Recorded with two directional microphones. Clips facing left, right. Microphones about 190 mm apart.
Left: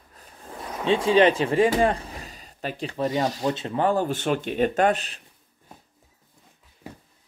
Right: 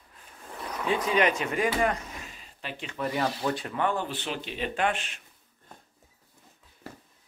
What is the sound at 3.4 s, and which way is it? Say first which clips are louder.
Speech: left 5 dB; 25° left (ahead or behind).